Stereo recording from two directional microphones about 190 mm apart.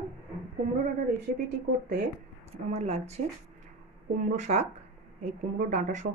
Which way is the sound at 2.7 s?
35° right (ahead or behind).